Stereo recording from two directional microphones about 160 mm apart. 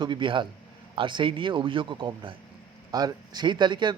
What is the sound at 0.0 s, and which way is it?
Speech, 30° right (ahead or behind).